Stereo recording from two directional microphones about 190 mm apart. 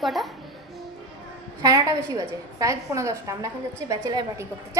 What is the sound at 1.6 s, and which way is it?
A woman's voice, 20° right (ahead or behind).